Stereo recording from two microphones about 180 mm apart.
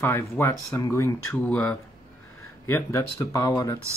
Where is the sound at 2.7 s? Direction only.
15° left (ahead or behind).